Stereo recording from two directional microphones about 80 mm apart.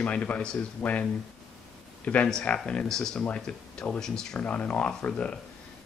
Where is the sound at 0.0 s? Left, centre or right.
Centre.